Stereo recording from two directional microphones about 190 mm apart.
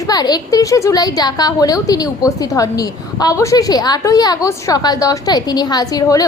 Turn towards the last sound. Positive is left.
turn(degrees=20)  # may be behind; listen again after turning